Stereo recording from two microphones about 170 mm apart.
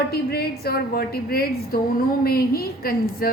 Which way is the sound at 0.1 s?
65° left (ahead or behind).